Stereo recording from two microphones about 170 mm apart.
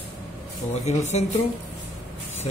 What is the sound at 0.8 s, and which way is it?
Speech, 40° left (ahead or behind).